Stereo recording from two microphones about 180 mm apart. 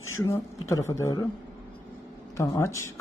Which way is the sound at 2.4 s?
15° left (ahead or behind).